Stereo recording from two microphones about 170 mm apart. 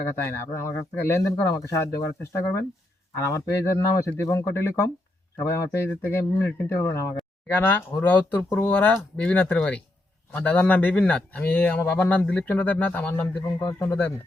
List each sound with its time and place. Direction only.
0.0 s speech: 15° left (ahead or behind)